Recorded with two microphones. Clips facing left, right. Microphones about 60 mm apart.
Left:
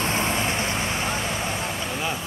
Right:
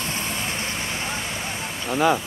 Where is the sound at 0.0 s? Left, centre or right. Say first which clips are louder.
Left 5 dB; left.